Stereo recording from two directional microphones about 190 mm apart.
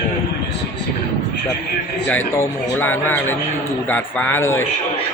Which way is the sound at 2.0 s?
10° left (ahead or behind).